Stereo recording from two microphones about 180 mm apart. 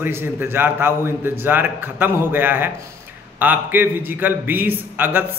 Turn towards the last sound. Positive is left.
turn(degrees=-10)  # may be behind; listen again after turning